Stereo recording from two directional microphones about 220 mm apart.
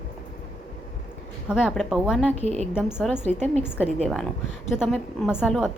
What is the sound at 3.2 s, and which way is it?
Speech, 30° right (ahead or behind).